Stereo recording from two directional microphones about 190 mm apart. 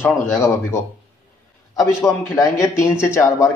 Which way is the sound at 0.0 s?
15° left (ahead or behind).